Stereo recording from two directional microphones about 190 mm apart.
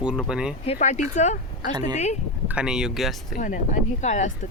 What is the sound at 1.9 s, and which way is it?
Speech, 35° left (ahead or behind).